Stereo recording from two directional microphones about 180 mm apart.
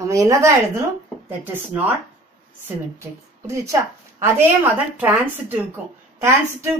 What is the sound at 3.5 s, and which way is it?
Speech, 15° right (ahead or behind).